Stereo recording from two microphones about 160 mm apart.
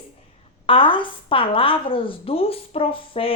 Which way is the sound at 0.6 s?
35° left (ahead or behind).